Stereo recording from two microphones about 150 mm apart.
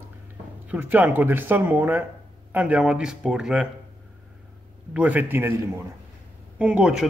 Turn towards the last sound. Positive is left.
turn(degrees=-5)  # may be behind; listen again after turning